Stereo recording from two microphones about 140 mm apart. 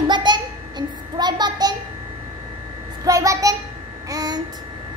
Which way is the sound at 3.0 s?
25° right (ahead or behind).